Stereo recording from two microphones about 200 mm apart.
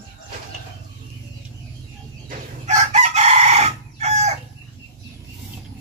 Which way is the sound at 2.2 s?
35° right (ahead or behind).